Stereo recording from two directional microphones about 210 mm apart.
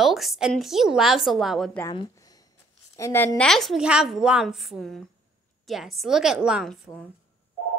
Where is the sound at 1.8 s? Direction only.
20° left (ahead or behind); by 7.0 s centre (ahead or behind).